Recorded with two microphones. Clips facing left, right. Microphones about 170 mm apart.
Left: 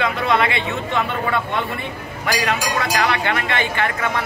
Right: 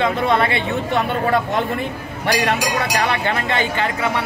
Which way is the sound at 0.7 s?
40° right (ahead or behind).